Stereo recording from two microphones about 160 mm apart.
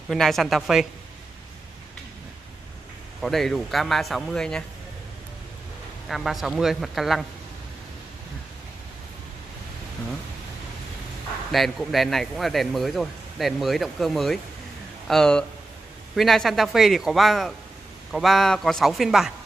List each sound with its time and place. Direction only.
0.1 s speech: centre (ahead or behind)
3.2 s speech: centre (ahead or behind)
6.0 s speech: centre (ahead or behind)
11.5 s speech: centre (ahead or behind)